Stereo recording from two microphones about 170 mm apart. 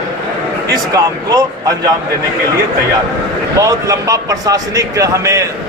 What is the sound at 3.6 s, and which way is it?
A man's voice, 20° right (ahead or behind).